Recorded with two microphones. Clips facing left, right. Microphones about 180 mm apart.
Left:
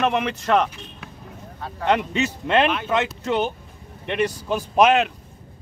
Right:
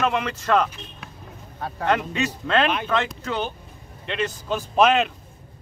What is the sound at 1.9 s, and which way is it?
A man's voice, 20° left (ahead or behind).